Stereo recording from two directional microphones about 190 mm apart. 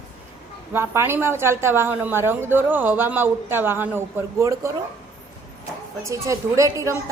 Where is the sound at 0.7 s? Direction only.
10° right (ahead or behind).